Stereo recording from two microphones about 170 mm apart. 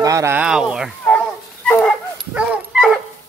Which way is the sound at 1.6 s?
10° left (ahead or behind).